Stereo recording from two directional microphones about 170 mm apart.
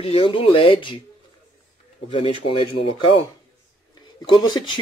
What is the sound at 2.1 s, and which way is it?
Speech, 30° left (ahead or behind).